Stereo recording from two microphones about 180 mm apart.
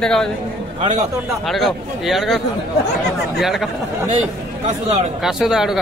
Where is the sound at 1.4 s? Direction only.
Centre (ahead or behind).